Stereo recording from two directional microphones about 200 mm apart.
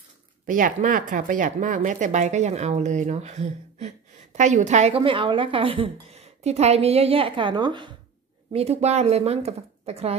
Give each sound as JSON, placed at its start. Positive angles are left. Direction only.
{"t": 0.5, "sound": "speech", "side_deg": -40}